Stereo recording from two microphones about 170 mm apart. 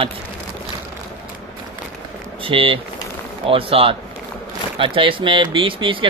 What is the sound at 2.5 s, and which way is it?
A man's voice, 30° right (ahead or behind).